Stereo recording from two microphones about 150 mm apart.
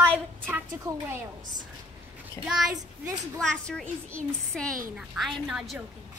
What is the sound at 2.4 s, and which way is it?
A child's voice, centre (ahead or behind).